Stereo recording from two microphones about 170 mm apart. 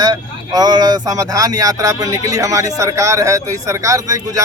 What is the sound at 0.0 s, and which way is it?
Speech, 25° right (ahead or behind).